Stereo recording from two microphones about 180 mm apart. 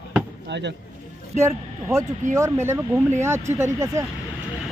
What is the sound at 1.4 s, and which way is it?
Speech, 15° right (ahead or behind).